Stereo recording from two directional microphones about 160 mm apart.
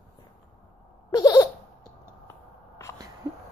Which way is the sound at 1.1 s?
25° left (ahead or behind).